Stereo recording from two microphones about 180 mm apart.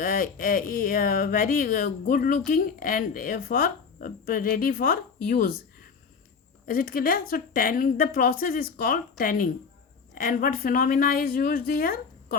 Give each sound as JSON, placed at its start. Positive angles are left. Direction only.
{"t": 0.0, "sound": "speech", "side_deg": 55}